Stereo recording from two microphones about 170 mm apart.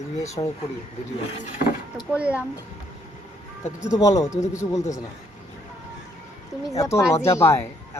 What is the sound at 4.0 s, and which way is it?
Speech, 20° left (ahead or behind).